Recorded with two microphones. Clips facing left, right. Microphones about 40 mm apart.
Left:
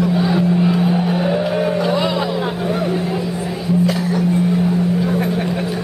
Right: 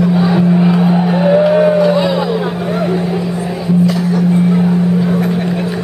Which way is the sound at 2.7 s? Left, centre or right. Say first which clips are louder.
Right 5 dB; centre.